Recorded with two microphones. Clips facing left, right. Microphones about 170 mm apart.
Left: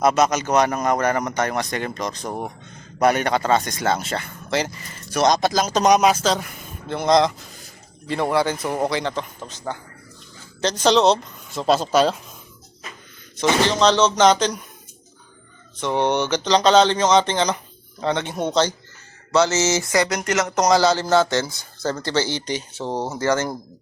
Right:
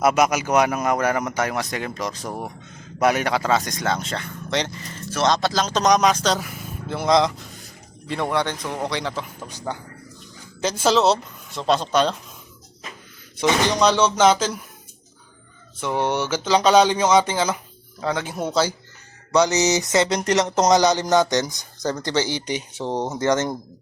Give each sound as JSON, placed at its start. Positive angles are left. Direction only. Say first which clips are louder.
{"t": 0.0, "sound": "speech", "louder": "left 1 dB", "side_deg": -10}
{"t": 13.3, "sound": "speech", "louder": "left 1 dB", "side_deg": -15}
{"t": 15.8, "sound": "speech", "louder": "left 2 dB", "side_deg": -5}
{"t": 19.3, "sound": "speech", "louder": "even", "side_deg": -15}
{"t": 20.7, "sound": "speech", "louder": "left 1 dB", "side_deg": -20}